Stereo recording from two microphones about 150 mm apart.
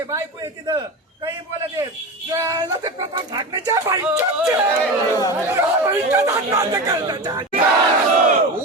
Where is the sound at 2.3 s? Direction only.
20° right (ahead or behind).